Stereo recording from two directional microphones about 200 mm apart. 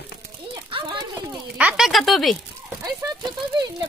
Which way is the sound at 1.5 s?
5° right (ahead or behind).